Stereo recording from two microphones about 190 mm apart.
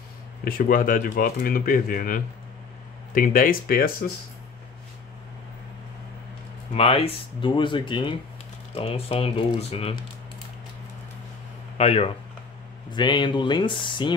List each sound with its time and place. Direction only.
0.5 s speech: 50° left (ahead or behind)
6.7 s speech: 30° left (ahead or behind)
11.8 s speech: 30° left (ahead or behind)